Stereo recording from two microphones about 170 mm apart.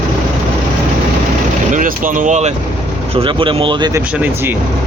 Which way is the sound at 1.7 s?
50° right (ahead or behind).